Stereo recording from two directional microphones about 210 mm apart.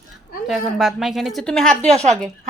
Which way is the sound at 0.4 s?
Centre (ahead or behind).